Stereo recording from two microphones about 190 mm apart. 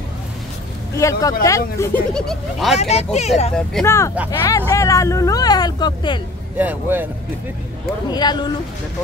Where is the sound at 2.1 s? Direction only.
Centre (ahead or behind).